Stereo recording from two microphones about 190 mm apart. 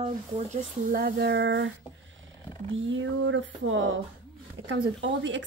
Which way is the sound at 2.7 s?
85° right.